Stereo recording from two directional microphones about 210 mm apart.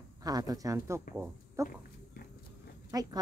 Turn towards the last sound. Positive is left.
turn(degrees=-15)  # may be behind; listen again after turning